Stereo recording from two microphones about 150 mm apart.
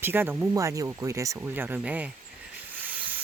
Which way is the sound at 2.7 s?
10° right (ahead or behind).